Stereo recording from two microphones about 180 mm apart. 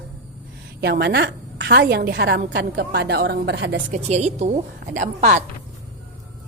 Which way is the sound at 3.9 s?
35° right (ahead or behind).